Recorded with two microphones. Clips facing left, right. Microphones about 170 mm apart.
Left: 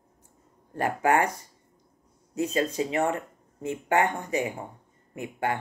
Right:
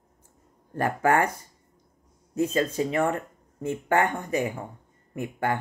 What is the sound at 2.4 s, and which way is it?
Speech, 50° right (ahead or behind).